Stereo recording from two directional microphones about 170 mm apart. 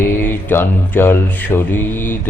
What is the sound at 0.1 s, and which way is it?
Mantra, 10° left (ahead or behind).